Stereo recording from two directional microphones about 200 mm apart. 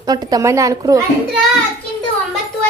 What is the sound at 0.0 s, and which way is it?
A woman's voice, 20° right (ahead or behind).